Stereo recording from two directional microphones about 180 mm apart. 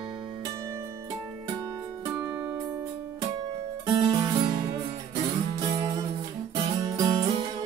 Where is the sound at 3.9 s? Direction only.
20° right (ahead or behind).